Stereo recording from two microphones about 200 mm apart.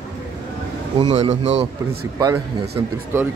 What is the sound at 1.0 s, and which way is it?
Speech, 35° right (ahead or behind).